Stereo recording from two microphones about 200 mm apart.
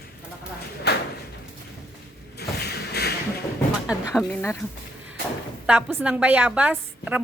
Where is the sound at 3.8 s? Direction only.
5° left (ahead or behind).